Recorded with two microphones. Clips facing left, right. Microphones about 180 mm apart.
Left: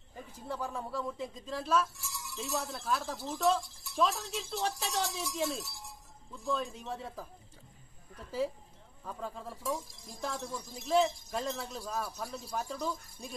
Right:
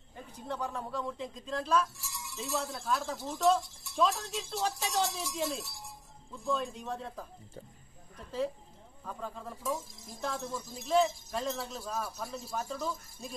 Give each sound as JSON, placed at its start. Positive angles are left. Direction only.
{"t": 0.5, "sound": "speech", "side_deg": 5}
{"t": 9.0, "sound": "speech", "side_deg": 5}